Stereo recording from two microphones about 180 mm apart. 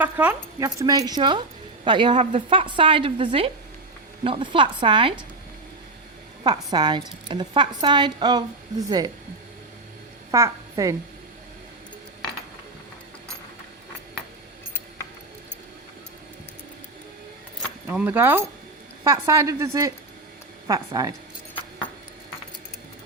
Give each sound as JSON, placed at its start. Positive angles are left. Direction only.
{"t": 0.0, "sound": "a woman's voice", "side_deg": -10}
{"t": 6.4, "sound": "a woman's voice", "side_deg": -25}
{"t": 10.3, "sound": "a woman's voice", "side_deg": -15}
{"t": 17.8, "sound": "a woman's voice", "side_deg": -10}